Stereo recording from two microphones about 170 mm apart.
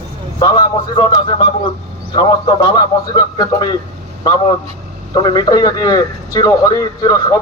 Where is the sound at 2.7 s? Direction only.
25° left (ahead or behind).